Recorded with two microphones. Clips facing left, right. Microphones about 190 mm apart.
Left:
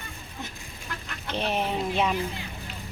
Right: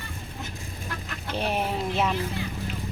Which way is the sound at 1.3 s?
10° right (ahead or behind).